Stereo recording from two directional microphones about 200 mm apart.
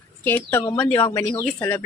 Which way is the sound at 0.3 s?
10° left (ahead or behind).